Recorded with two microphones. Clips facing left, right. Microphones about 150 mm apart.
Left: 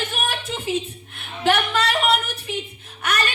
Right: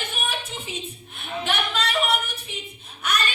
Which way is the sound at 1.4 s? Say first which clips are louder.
Left 7 dB; 90° left.